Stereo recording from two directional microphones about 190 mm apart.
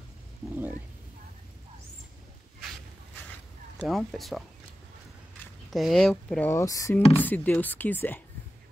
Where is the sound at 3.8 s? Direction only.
Centre (ahead or behind).